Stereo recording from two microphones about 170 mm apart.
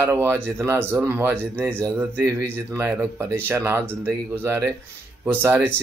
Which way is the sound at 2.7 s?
15° right (ahead or behind).